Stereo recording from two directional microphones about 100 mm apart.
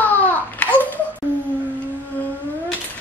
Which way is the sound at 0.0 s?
15° left (ahead or behind).